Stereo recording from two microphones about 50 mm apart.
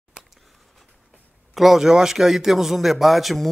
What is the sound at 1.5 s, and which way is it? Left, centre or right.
A man's voice, centre.